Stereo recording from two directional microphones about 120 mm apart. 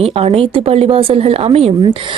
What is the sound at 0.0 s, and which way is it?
A woman's voice, 55° right (ahead or behind).